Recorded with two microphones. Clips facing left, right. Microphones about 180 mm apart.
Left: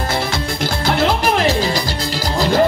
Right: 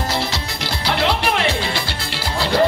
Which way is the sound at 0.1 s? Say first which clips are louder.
Left 3 dB; 50° left (ahead or behind).